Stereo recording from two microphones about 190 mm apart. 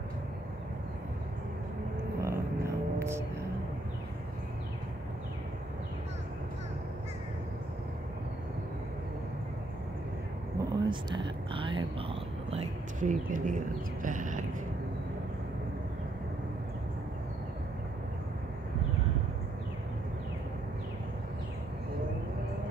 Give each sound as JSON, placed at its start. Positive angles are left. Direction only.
{"t": 2.2, "sound": "music", "side_deg": -15}
{"t": 10.6, "sound": "a sound", "side_deg": -25}
{"t": 14.0, "sound": "cat", "side_deg": -45}